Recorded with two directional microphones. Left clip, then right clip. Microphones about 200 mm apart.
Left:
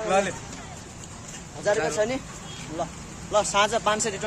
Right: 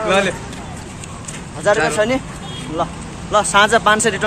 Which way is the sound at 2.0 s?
10° left (ahead or behind).